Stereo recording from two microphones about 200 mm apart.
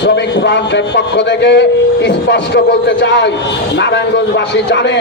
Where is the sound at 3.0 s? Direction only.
60° left (ahead or behind).